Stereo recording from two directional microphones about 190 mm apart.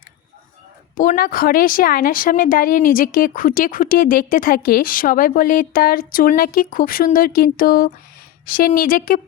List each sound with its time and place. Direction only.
0.9 s speech: 45° left (ahead or behind)